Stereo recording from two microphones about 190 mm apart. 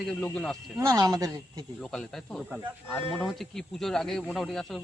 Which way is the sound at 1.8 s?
5° left (ahead or behind).